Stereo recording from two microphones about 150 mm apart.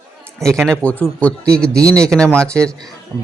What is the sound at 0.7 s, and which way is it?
A man's voice, 5° left (ahead or behind).